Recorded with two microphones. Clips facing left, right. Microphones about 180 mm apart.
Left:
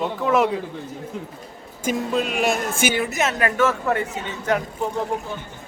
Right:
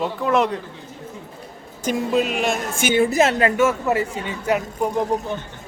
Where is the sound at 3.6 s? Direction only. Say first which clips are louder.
Right 2 dB; 10° right (ahead or behind).